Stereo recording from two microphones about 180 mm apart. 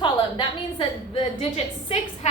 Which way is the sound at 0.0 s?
25° left (ahead or behind).